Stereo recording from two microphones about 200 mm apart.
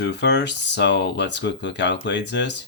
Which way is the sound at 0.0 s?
60° left (ahead or behind).